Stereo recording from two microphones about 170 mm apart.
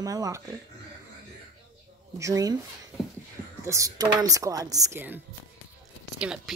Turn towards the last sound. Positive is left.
turn(degrees=-5)  # may be behind; listen again after turning